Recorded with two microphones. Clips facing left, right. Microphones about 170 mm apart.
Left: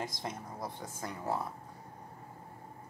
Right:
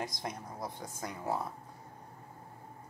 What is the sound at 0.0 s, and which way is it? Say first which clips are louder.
Speech: even; 15° right (ahead or behind).